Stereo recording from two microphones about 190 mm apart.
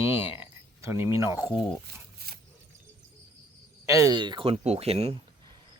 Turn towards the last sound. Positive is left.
turn(degrees=-30)  # may be behind; listen again after turning